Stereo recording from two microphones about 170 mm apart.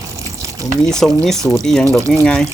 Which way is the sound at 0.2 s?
20° right (ahead or behind).